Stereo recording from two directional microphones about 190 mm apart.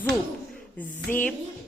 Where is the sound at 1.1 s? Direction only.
10° left (ahead or behind).